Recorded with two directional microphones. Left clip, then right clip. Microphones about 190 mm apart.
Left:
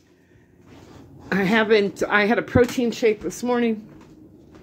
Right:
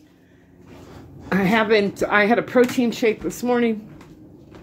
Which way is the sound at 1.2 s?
15° left (ahead or behind).